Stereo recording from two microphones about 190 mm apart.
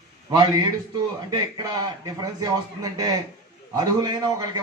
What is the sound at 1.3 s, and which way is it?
A man's voice, 20° right (ahead or behind).